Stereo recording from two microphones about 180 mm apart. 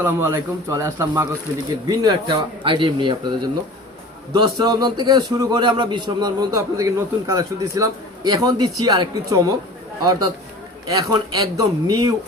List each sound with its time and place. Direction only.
0.0 s a man's voice: 15° right (ahead or behind)